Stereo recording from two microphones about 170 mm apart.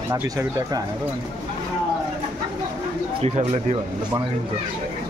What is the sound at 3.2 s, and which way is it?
Speech, 40° right (ahead or behind).